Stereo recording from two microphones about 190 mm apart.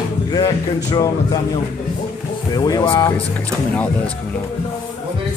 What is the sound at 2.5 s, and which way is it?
Speech, 20° left (ahead or behind).